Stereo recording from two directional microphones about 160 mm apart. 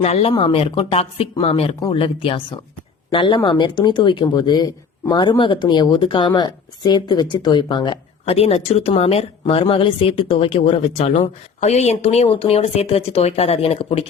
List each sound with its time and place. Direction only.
0.0 s speech: 40° left (ahead or behind)